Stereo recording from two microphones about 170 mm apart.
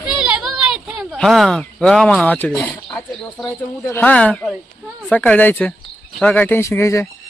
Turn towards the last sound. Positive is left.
turn(degrees=15)  # may be behind; listen again after turning